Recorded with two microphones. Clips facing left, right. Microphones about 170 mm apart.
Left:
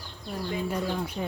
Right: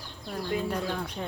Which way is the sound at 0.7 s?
10° left (ahead or behind).